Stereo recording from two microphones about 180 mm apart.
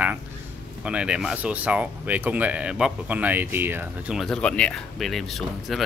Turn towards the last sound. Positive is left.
turn(degrees=0)  # may be behind; listen again after turning